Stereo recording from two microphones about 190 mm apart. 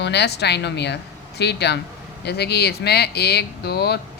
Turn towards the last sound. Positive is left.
turn(degrees=60)  # may be behind; listen again after turning